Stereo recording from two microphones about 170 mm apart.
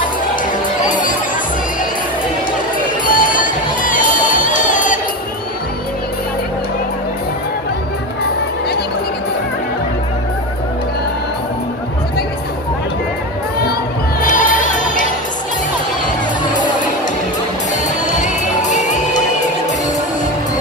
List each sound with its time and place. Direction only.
0.8 s music: 50° left (ahead or behind)
3.1 s crowd: 50° left (ahead or behind)
14.2 s music: 50° left (ahead or behind)
18.0 s crowd: 45° left (ahead or behind)